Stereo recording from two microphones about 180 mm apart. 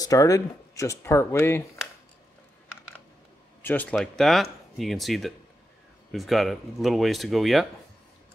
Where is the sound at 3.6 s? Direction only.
10° left (ahead or behind).